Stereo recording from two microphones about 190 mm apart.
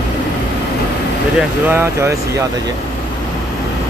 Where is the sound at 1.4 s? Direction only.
10° right (ahead or behind).